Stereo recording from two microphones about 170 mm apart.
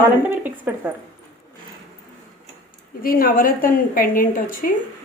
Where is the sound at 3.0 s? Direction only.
60° left (ahead or behind).